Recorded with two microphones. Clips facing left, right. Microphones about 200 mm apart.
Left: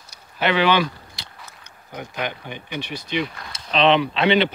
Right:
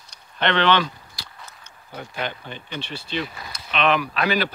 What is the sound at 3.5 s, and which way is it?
Speech, 30° left (ahead or behind).